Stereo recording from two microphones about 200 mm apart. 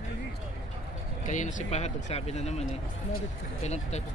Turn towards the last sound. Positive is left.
turn(degrees=35)  # may be behind; listen again after turning